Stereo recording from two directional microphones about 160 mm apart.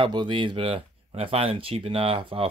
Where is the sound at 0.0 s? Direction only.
30° right (ahead or behind).